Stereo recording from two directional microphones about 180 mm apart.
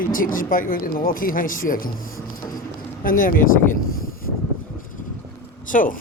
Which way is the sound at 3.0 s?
50° left (ahead or behind).